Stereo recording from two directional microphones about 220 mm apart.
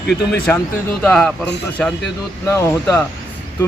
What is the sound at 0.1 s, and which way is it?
A man's voice, 5° left (ahead or behind).